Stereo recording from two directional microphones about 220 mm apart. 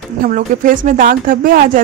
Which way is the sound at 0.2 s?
40° right (ahead or behind).